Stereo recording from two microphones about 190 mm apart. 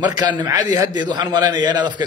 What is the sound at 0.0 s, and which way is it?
A man's voice, 25° right (ahead or behind).